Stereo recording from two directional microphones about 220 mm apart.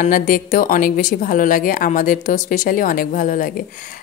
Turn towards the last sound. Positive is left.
turn(degrees=40)  # may be behind; listen again after turning